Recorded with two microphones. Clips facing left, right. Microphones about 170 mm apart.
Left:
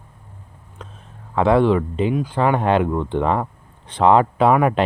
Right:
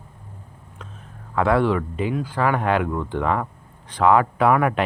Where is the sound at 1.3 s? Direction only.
25° left (ahead or behind).